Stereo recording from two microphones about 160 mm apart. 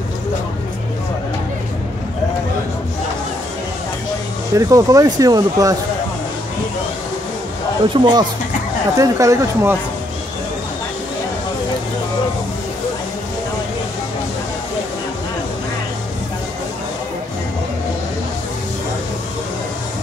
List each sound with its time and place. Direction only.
4.6 s speech: 20° right (ahead or behind)
7.9 s speech: 25° right (ahead or behind)